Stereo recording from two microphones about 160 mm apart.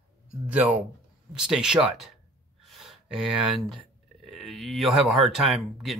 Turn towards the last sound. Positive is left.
turn(degrees=0)  # may be behind; listen again after turning